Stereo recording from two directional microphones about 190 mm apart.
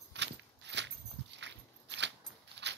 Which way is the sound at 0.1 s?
65° right (ahead or behind).